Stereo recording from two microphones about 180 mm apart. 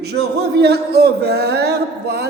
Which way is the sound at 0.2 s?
65° right (ahead or behind).